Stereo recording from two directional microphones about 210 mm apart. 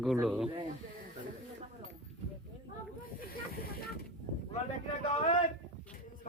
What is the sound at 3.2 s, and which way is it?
Snake, 45° left (ahead or behind).